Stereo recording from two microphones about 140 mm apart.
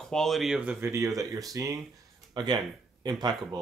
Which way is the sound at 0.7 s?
20° right (ahead or behind).